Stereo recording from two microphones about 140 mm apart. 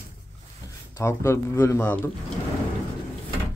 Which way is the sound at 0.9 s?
20° left (ahead or behind).